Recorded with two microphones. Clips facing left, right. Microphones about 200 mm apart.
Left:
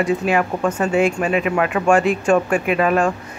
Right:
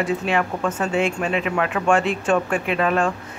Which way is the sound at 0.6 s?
15° left (ahead or behind).